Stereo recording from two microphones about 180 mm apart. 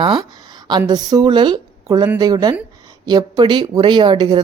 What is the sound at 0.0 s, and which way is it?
A woman's voice, 25° right (ahead or behind).